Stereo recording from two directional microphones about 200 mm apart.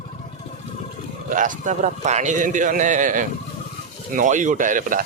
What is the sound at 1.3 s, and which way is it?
A man's voice, 40° right (ahead or behind).